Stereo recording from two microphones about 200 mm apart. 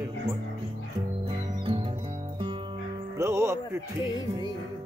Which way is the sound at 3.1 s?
15° right (ahead or behind).